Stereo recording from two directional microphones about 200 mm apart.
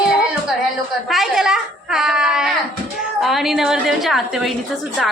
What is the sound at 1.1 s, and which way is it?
A child's voice, centre (ahead or behind).